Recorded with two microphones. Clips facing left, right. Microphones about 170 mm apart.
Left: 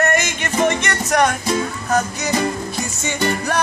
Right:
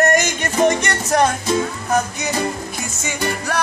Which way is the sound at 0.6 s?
35° right (ahead or behind).